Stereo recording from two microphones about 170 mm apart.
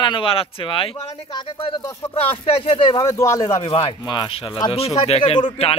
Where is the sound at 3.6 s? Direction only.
30° left (ahead or behind).